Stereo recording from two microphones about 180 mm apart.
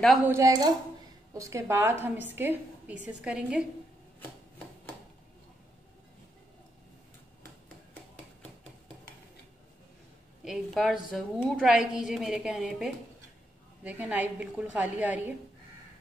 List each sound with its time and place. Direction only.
0.3 s a woman's voice: 20° right (ahead or behind)
10.4 s a woman's voice: centre (ahead or behind)